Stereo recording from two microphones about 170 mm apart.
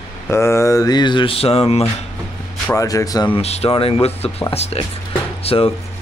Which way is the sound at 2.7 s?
20° left (ahead or behind).